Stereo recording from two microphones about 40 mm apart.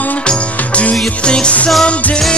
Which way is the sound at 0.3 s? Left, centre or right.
Left.